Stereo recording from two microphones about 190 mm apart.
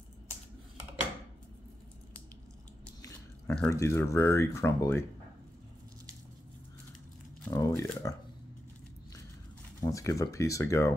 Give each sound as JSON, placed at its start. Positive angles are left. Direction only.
{"t": 3.0, "sound": "chewing", "side_deg": 5}
{"t": 3.7, "sound": "speech", "side_deg": 15}
{"t": 7.4, "sound": "a sound", "side_deg": 15}
{"t": 9.8, "sound": "speech", "side_deg": 15}